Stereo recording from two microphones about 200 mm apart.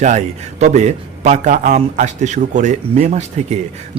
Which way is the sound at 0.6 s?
35° right (ahead or behind).